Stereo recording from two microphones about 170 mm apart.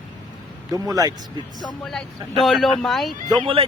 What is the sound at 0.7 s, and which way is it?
Speech, 20° right (ahead or behind).